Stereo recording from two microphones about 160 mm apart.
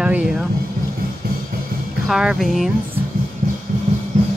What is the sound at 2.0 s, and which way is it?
Speech, 5° right (ahead or behind).